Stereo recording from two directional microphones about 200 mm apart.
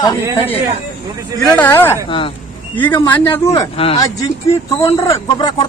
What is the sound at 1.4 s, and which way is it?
Speech, 10° left (ahead or behind).